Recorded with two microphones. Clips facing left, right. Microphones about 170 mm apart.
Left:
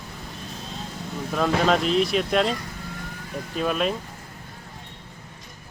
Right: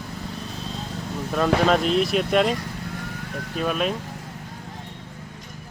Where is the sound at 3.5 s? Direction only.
Centre (ahead or behind).